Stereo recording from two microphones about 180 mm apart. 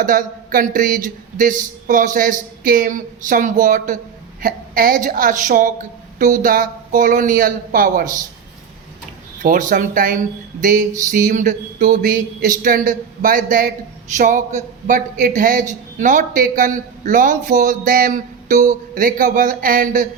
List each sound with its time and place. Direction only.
0.0 s a woman's voice: 50° right (ahead or behind)
9.4 s a woman's voice: 50° right (ahead or behind)